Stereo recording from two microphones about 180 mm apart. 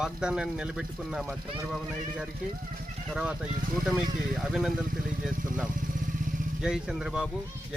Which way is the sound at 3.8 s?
Centre (ahead or behind).